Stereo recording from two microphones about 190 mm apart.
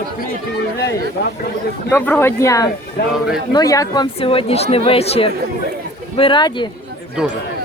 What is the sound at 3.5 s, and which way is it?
Speech, 20° left (ahead or behind).